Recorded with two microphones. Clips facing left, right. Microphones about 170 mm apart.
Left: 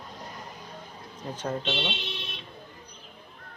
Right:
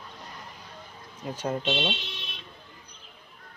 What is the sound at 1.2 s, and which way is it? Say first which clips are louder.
Speech: right 2 dB; 10° right (ahead or behind).